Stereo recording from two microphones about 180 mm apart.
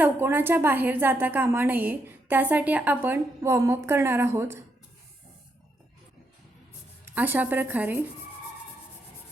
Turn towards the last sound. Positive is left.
turn(degrees=-10)  # may be behind; listen again after turning